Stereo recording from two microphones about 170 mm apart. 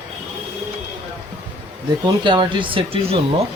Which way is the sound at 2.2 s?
25° right (ahead or behind).